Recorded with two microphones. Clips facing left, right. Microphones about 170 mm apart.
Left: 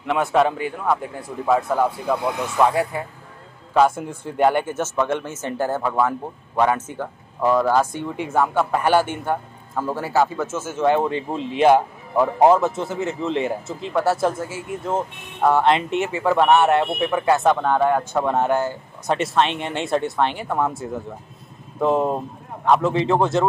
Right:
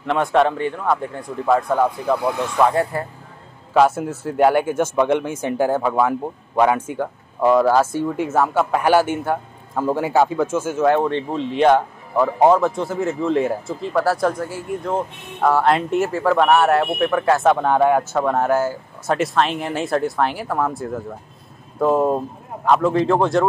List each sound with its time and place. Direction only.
0.0 s a man's voice: 5° left (ahead or behind)
3.7 s speech: 5° right (ahead or behind)
10.9 s a man's voice: 5° left (ahead or behind)